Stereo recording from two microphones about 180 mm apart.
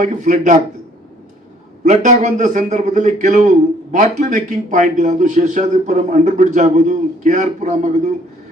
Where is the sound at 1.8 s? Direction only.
40° right (ahead or behind).